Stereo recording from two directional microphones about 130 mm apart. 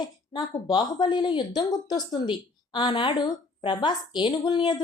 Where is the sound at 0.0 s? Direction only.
30° left (ahead or behind).